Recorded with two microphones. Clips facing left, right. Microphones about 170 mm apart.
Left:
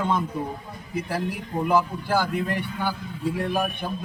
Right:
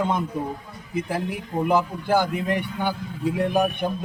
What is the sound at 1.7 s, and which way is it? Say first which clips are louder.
A man's voice: right 1 dB; 20° right (ahead or behind).